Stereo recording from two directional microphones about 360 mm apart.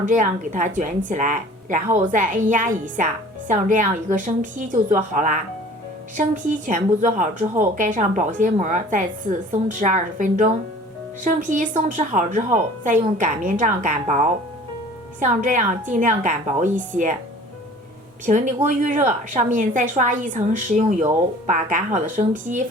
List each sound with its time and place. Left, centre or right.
0.0 s speech: right
18.3 s speech: right